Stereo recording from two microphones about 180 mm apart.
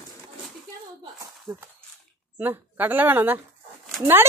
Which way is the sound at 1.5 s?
10° right (ahead or behind).